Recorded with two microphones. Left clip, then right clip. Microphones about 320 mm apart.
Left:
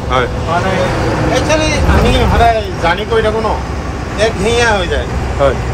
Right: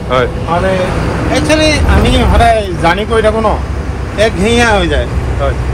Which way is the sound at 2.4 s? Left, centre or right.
Centre.